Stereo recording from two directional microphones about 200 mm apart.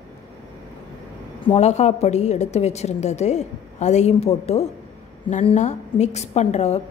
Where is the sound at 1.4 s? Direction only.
30° left (ahead or behind).